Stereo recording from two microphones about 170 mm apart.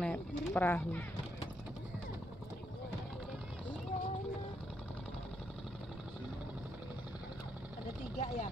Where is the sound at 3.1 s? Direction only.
Centre (ahead or behind).